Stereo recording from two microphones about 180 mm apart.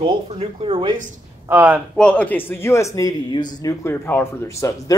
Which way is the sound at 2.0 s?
5° left (ahead or behind).